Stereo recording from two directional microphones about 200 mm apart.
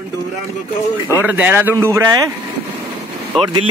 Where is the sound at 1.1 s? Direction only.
10° right (ahead or behind).